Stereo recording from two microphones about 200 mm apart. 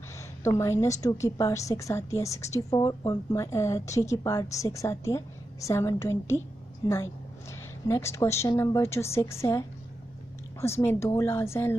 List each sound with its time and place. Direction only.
0.4 s a woman's voice: 15° left (ahead or behind)